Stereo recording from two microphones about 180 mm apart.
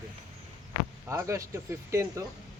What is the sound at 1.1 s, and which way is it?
Speech, 15° right (ahead or behind).